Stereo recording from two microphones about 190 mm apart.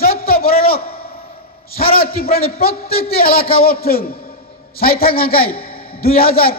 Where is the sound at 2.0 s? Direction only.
50° left (ahead or behind).